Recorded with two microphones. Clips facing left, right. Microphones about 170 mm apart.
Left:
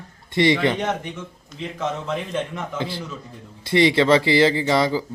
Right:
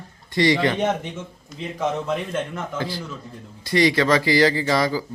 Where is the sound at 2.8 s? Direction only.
25° left (ahead or behind).